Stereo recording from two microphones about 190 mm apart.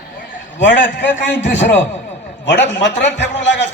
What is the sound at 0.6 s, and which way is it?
Speech, 70° left (ahead or behind).